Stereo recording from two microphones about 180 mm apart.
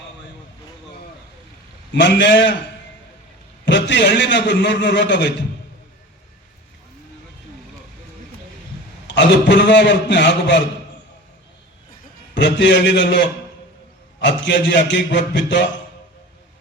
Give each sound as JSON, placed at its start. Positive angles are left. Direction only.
{"t": 1.9, "sound": "a man's voice", "side_deg": 80}
{"t": 3.7, "sound": "a man's voice", "side_deg": 80}
{"t": 9.0, "sound": "a man's voice", "side_deg": 80}
{"t": 12.3, "sound": "a man's voice", "side_deg": 80}